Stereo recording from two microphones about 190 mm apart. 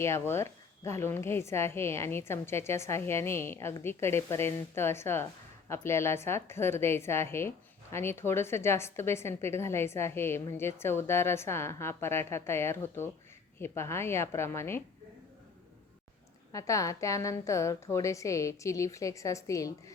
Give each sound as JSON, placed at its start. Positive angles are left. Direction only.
{"t": 0.0, "sound": "a woman's voice", "side_deg": 15}
{"t": 16.5, "sound": "a woman's voice", "side_deg": 15}